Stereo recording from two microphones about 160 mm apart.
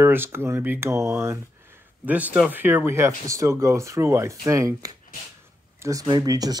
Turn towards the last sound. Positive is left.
turn(degrees=-25)  # may be behind; listen again after turning